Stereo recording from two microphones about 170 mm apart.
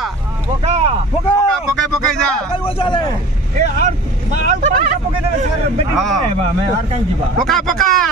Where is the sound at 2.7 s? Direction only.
30° left (ahead or behind).